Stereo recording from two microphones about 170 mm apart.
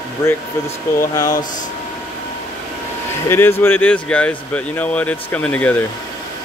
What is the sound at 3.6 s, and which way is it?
Speech, 10° left (ahead or behind).